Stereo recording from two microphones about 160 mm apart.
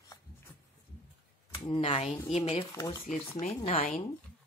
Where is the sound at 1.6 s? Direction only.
35° left (ahead or behind).